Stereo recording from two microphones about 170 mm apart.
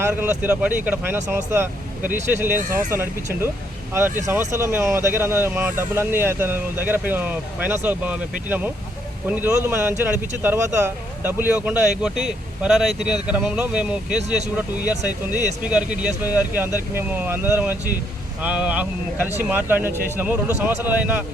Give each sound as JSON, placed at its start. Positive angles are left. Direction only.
{"t": 0.0, "sound": "speech", "side_deg": -10}
{"t": 2.6, "sound": "speech", "side_deg": -55}
{"t": 4.3, "sound": "speech", "side_deg": -15}